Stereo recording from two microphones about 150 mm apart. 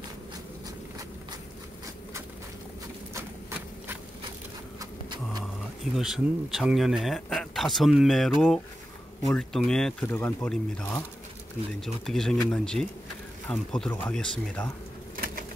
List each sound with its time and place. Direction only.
3.2 s horse: 15° right (ahead or behind)
5.9 s speech: 5° right (ahead or behind)
15.1 s bird: 70° right (ahead or behind)